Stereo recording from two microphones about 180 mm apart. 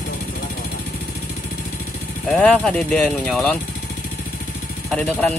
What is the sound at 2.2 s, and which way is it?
Speech, 5° left (ahead or behind).